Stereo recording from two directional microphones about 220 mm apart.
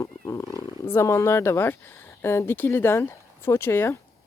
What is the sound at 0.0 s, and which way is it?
Speech, 15° left (ahead or behind).